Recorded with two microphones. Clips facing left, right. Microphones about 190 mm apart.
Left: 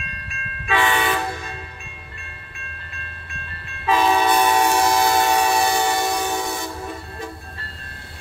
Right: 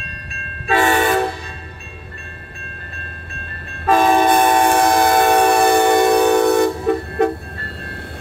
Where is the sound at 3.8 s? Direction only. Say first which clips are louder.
Right 5 dB; 50° right (ahead or behind).